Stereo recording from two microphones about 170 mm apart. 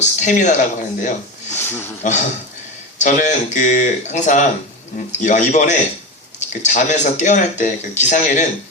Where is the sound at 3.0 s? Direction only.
45° left (ahead or behind).